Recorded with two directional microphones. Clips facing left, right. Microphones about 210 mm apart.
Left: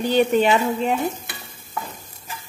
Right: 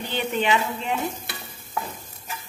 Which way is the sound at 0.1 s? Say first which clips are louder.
Left 7 dB; 40° left (ahead or behind).